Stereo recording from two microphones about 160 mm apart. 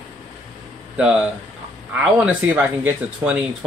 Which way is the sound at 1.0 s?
5° right (ahead or behind).